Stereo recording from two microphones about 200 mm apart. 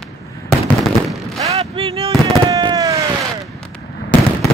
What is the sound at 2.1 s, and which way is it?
Fireworks, 20° right (ahead or behind).